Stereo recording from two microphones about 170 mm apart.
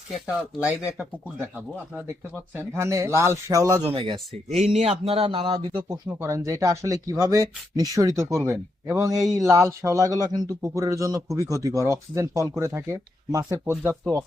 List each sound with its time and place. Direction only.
0.1 s speech: 5° right (ahead or behind)
2.6 s speech: 15° right (ahead or behind)
4.4 s speech: 40° right (ahead or behind)
5.9 s speech: 15° right (ahead or behind)